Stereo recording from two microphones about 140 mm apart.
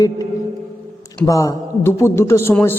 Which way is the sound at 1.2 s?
25° left (ahead or behind).